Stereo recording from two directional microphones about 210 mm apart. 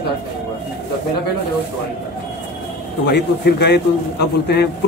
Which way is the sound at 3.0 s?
55° left (ahead or behind).